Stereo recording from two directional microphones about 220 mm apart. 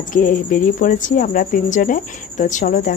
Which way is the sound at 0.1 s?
40° left (ahead or behind).